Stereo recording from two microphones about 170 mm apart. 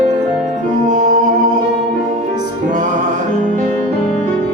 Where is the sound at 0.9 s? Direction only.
45° right (ahead or behind).